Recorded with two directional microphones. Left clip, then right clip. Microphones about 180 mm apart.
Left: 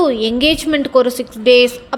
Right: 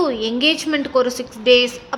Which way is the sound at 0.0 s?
25° left (ahead or behind).